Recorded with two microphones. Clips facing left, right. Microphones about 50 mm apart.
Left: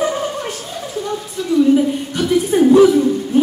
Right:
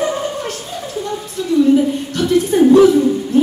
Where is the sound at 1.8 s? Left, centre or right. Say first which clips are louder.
Right 1 dB; centre.